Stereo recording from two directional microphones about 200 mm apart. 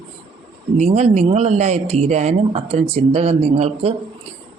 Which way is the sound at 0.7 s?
35° right (ahead or behind).